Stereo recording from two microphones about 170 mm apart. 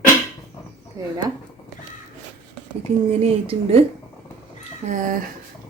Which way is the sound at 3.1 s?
35° right (ahead or behind).